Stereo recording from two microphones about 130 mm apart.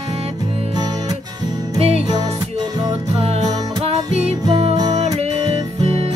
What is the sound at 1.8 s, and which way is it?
Music, 50° right (ahead or behind).